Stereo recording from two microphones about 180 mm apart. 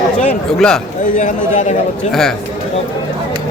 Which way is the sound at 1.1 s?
40° left (ahead or behind).